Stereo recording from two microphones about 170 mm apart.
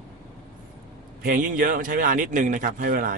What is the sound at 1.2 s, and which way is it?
A man's voice, 55° right (ahead or behind).